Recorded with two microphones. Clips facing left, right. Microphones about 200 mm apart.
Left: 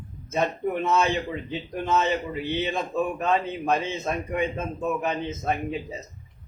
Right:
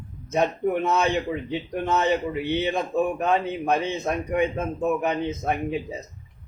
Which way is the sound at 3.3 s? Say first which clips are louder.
Right 1 dB; 15° right (ahead or behind).